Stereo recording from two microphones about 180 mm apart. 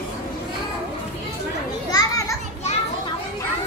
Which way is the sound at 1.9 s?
20° left (ahead or behind).